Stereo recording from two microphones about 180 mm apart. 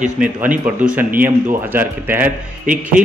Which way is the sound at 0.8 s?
10° right (ahead or behind).